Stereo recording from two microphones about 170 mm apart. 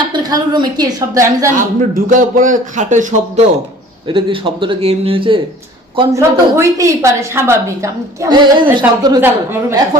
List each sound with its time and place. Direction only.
0.0 s a woman's voice: 25° right (ahead or behind)
1.5 s a man's voice: 50° right (ahead or behind)
4.0 s speech: 30° right (ahead or behind)
6.1 s a woman's voice: 20° right (ahead or behind)
9.2 s a woman's voice: 15° right (ahead or behind)